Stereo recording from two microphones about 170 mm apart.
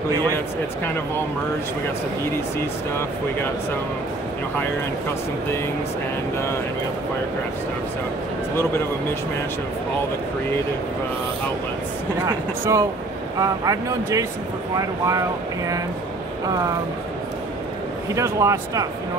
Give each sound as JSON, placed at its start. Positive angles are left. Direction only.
{"t": 12.3, "sound": "speech", "side_deg": -20}
{"t": 18.1, "sound": "speech", "side_deg": -20}